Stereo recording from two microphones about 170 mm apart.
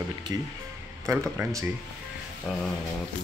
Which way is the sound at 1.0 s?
20° right (ahead or behind).